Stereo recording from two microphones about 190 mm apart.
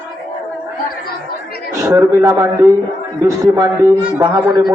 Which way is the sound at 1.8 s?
15° right (ahead or behind).